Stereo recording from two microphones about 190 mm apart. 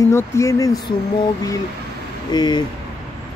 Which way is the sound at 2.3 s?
20° left (ahead or behind).